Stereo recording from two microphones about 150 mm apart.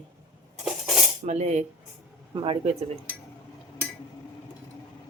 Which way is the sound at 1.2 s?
50° right (ahead or behind).